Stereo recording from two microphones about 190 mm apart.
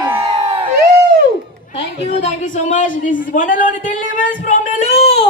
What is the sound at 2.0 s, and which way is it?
Speech, 40° left (ahead or behind).